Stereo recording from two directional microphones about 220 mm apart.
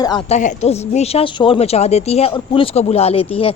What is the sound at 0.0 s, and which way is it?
Speech, 20° left (ahead or behind).